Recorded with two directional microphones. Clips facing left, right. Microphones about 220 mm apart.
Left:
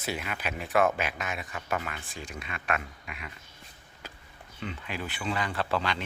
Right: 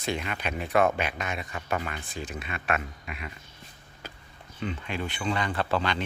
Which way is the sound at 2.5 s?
40° right (ahead or behind).